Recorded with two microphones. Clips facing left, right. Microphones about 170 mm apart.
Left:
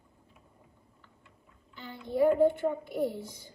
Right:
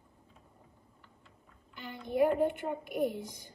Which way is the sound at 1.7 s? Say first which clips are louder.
Left 1 dB; 15° right (ahead or behind).